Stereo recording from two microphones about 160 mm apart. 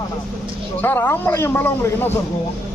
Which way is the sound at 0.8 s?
10° left (ahead or behind).